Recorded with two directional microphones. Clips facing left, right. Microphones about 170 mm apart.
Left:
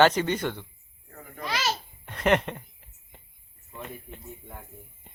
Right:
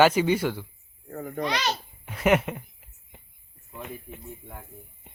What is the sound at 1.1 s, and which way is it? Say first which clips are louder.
Speech: right 12 dB; 40° right (ahead or behind).